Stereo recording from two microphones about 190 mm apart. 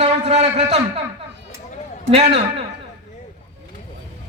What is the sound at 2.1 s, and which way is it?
Speech, 35° right (ahead or behind).